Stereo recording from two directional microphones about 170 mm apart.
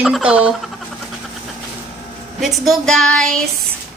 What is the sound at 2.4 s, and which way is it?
Speech, centre (ahead or behind).